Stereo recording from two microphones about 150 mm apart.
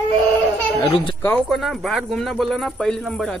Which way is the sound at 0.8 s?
35° left (ahead or behind).